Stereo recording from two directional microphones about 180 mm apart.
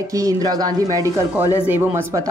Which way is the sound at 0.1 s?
20° right (ahead or behind).